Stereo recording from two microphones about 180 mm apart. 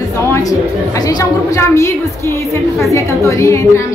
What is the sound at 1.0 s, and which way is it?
A woman's voice, 20° left (ahead or behind).